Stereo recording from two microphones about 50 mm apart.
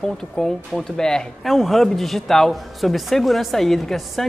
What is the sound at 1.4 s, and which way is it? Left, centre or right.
Speech, centre.